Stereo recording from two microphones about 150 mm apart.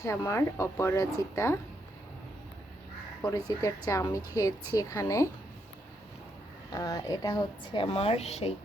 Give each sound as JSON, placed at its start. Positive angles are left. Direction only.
{"t": 0.0, "sound": "a woman's voice", "side_deg": 20}
{"t": 3.2, "sound": "a woman's voice", "side_deg": 20}
{"t": 6.7, "sound": "a woman's voice", "side_deg": 20}